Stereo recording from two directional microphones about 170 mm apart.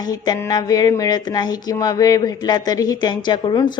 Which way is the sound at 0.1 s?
20° left (ahead or behind).